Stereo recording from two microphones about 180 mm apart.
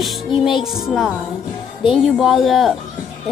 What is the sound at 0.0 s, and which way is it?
Music, centre (ahead or behind).